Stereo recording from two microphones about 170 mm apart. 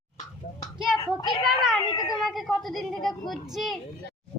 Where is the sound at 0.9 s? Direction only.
5° left (ahead or behind).